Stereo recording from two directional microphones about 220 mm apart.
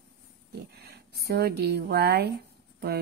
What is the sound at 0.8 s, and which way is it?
A woman's voice, 45° right (ahead or behind).